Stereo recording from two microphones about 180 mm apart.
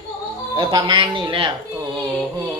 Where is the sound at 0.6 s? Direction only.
25° right (ahead or behind).